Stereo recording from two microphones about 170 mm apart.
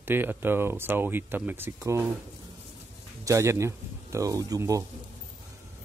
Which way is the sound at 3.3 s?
15° right (ahead or behind).